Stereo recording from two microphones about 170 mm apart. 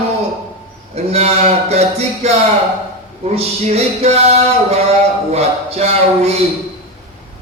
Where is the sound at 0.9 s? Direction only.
40° right (ahead or behind).